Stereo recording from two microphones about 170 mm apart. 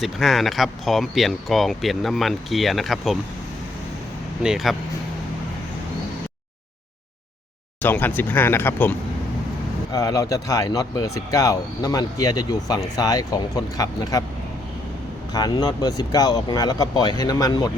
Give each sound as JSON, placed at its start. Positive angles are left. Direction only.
{"t": 0.0, "sound": "speech", "side_deg": 0}
{"t": 4.4, "sound": "speech", "side_deg": 0}
{"t": 7.8, "sound": "speech", "side_deg": 10}
{"t": 15.3, "sound": "speech", "side_deg": 25}